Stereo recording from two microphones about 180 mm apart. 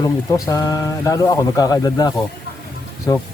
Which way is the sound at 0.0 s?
20° left (ahead or behind).